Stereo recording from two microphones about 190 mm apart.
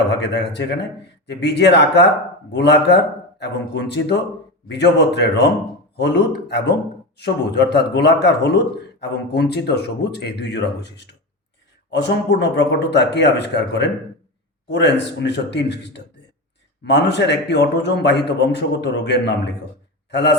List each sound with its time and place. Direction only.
0.1 s a man's voice: 65° left (ahead or behind)